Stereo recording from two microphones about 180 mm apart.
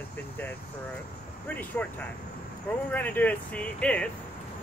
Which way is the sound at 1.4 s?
10° left (ahead or behind).